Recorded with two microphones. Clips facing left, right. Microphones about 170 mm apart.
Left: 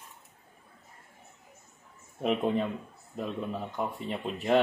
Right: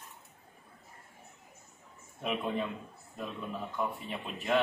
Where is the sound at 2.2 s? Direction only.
40° left (ahead or behind).